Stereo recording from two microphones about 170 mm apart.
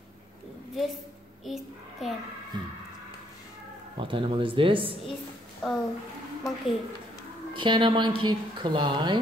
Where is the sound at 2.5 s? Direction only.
25° right (ahead or behind).